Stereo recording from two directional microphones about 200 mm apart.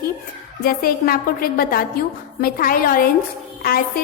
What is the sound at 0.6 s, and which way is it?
A woman's voice, 45° left (ahead or behind).